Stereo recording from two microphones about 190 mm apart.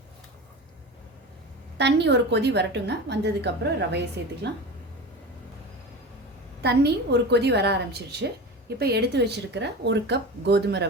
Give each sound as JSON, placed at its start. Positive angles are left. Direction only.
{"t": 1.8, "sound": "a woman's voice", "side_deg": -65}
{"t": 6.6, "sound": "a woman's voice", "side_deg": -60}
{"t": 8.8, "sound": "a woman's voice", "side_deg": -60}